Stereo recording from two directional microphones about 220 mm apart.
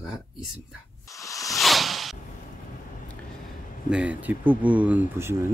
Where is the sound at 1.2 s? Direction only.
15° left (ahead or behind).